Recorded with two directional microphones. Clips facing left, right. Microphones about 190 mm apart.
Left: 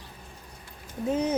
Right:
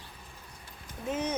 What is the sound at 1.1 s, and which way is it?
Speech, 35° left (ahead or behind).